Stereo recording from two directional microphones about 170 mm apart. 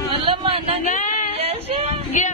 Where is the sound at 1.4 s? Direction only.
35° right (ahead or behind).